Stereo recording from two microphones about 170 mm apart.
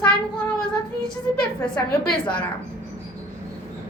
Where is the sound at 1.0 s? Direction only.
5° left (ahead or behind).